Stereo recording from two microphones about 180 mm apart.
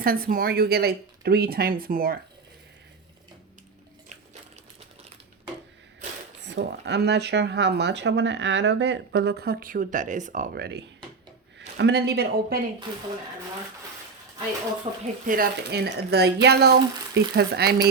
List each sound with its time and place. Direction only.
0.0 s speech: 55° right (ahead or behind)
6.4 s speech: 70° right (ahead or behind)
14.9 s speech: 35° right (ahead or behind)
15.3 s speech: 60° right (ahead or behind)